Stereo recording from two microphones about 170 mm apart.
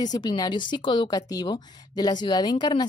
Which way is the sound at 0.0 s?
25° left (ahead or behind).